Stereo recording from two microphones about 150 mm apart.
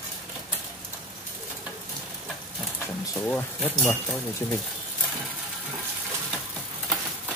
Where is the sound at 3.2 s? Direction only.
15° left (ahead or behind).